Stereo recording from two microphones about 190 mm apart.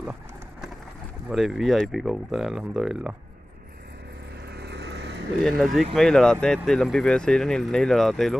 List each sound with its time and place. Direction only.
0.0 s clip-clop: 5° right (ahead or behind)
1.3 s speech: centre (ahead or behind)
4.6 s vehicle: 60° right (ahead or behind)
5.6 s speech: centre (ahead or behind)